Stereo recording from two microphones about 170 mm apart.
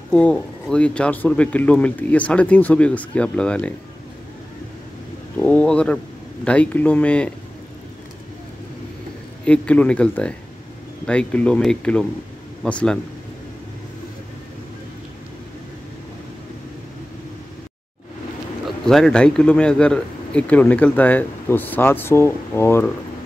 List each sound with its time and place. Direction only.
0.1 s a man's voice: 5° left (ahead or behind)
5.4 s a man's voice: 10° left (ahead or behind)
9.4 s a man's voice: 10° left (ahead or behind)
18.9 s a man's voice: 5° left (ahead or behind)